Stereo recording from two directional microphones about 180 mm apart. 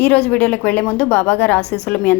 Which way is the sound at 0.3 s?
5° left (ahead or behind).